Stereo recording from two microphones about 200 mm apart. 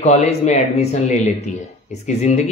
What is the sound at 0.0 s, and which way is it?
Speech, 35° left (ahead or behind).